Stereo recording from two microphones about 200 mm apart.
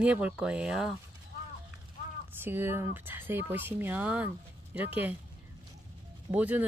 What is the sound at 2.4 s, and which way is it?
Speech, 10° right (ahead or behind).